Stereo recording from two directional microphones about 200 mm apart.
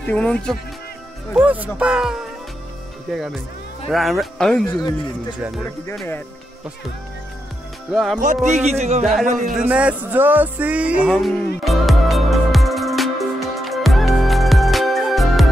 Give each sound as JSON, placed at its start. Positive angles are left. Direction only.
{"t": 0.0, "sound": "speech", "side_deg": 5}
{"t": 1.3, "sound": "speech", "side_deg": -5}
{"t": 7.9, "sound": "speech", "side_deg": 0}
{"t": 8.5, "sound": "speech", "side_deg": -35}
{"t": 9.5, "sound": "music", "side_deg": -5}